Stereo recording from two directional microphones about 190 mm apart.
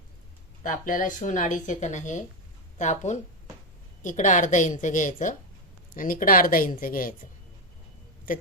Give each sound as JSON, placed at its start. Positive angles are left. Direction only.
{"t": 0.6, "sound": "speech", "side_deg": 45}